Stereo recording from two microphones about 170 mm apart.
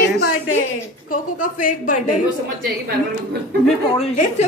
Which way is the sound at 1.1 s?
55° left (ahead or behind).